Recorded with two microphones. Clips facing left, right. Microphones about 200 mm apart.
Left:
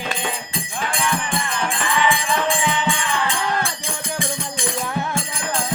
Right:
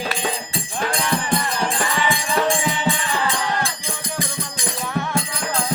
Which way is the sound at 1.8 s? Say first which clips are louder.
Left 2 dB; 40° right (ahead or behind).